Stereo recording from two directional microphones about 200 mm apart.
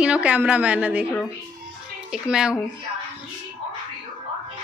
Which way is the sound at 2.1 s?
5° right (ahead or behind).